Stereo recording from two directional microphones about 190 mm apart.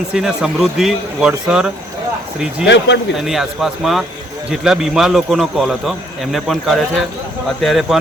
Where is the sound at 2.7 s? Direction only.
70° left (ahead or behind).